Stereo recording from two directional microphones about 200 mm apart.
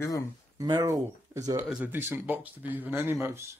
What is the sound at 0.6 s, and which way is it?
Speech, 20° right (ahead or behind).